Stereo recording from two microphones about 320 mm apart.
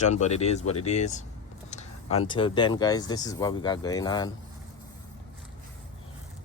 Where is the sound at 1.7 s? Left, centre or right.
Left.